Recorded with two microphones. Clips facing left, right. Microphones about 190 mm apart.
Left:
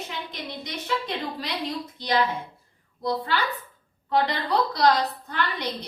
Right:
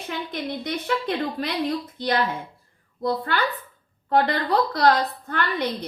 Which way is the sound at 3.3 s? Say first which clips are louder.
Right 2 dB; 55° right (ahead or behind).